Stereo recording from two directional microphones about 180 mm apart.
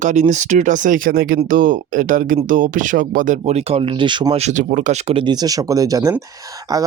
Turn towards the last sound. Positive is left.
turn(degrees=-20)  # may be behind; listen again after turning